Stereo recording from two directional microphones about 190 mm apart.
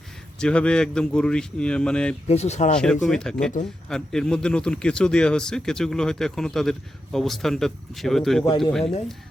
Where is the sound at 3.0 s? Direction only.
5° left (ahead or behind).